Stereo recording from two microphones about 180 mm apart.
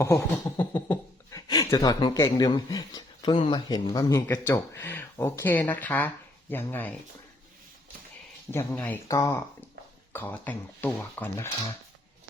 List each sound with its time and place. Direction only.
0.0 s speech: 15° left (ahead or behind)
8.5 s speech: 10° left (ahead or behind)